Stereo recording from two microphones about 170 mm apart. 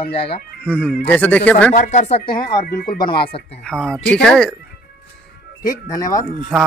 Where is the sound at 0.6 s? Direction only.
10° left (ahead or behind).